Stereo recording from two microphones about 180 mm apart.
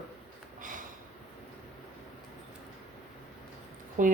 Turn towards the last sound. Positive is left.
turn(degrees=-45)  # may be behind; listen again after turning